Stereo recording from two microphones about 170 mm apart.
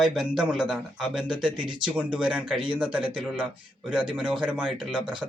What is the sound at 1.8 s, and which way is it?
A man's voice, 5° right (ahead or behind).